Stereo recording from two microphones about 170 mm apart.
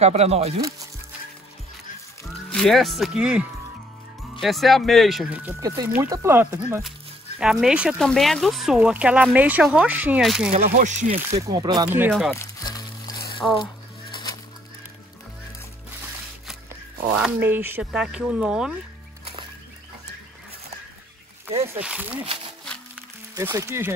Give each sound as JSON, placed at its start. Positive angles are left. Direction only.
{"t": 0.0, "sound": "speech", "side_deg": -40}
{"t": 0.6, "sound": "speech", "side_deg": -20}
{"t": 2.5, "sound": "speech", "side_deg": 0}
{"t": 5.6, "sound": "speech", "side_deg": -20}
{"t": 10.8, "sound": "speech", "side_deg": -45}
{"t": 11.4, "sound": "speech", "side_deg": -25}
{"t": 12.1, "sound": "speech", "side_deg": 0}
{"t": 12.4, "sound": "music", "side_deg": 20}
{"t": 13.4, "sound": "speech", "side_deg": 5}
{"t": 14.1, "sound": "fowl", "side_deg": 25}
{"t": 17.1, "sound": "speech", "side_deg": -10}
{"t": 21.7, "sound": "speech", "side_deg": -10}
{"t": 22.2, "sound": "speech", "side_deg": -35}
{"t": 23.3, "sound": "speech", "side_deg": -20}